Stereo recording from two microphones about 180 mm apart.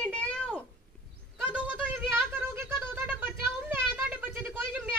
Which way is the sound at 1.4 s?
10° right (ahead or behind).